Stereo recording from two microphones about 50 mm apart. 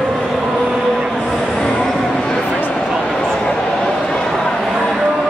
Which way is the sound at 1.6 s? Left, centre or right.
Centre.